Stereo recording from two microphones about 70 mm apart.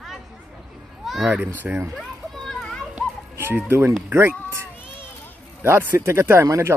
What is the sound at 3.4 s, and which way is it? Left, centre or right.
Speech, right.